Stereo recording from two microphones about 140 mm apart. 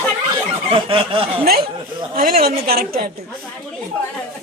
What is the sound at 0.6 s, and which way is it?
Speech, 40° right (ahead or behind).